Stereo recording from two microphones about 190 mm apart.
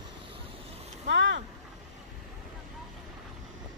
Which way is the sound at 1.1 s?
75° right (ahead or behind).